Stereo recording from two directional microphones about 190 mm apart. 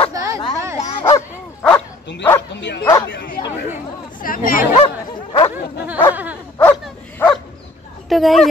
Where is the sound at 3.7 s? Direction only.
45° left (ahead or behind).